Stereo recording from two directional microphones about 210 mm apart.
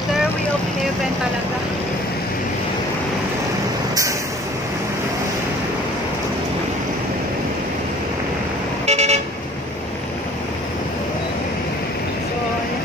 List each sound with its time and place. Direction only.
8.8 s vehicle: 30° right (ahead or behind)